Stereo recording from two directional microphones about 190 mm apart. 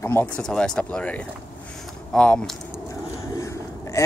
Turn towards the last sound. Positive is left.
turn(degrees=15)  # may be behind; listen again after turning